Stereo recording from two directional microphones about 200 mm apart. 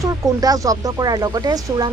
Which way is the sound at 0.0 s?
20° right (ahead or behind).